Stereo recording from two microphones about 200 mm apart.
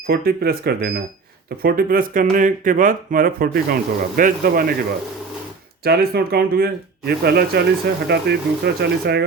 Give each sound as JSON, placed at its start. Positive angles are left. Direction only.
{"t": 0.1, "sound": "speech", "side_deg": -50}
{"t": 5.8, "sound": "speech", "side_deg": -50}